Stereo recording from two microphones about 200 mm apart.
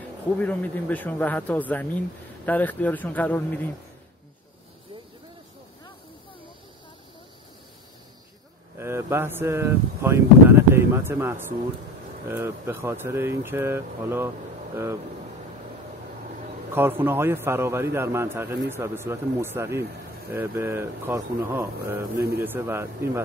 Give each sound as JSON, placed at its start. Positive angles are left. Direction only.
{"t": 0.4, "sound": "speech", "side_deg": 10}
{"t": 8.7, "sound": "a man's voice", "side_deg": -10}
{"t": 17.0, "sound": "a man's voice", "side_deg": -10}